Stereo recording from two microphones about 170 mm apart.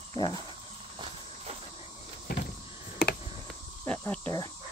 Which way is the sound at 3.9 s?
10° left (ahead or behind).